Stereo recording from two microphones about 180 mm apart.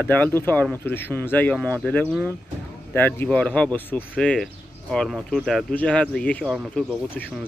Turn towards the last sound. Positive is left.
turn(degrees=0)  # may be behind; listen again after turning